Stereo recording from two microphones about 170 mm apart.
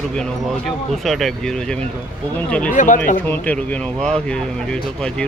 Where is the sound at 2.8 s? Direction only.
50° left (ahead or behind).